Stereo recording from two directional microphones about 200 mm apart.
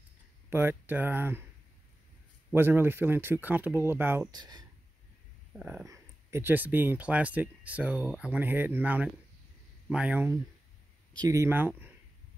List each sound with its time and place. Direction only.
0.5 s speech: 10° right (ahead or behind)
2.5 s speech: 10° right (ahead or behind)
5.5 s speech: 5° right (ahead or behind)